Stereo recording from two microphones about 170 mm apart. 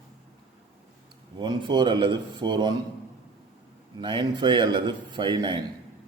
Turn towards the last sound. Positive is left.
turn(degrees=-25)  # may be behind; listen again after turning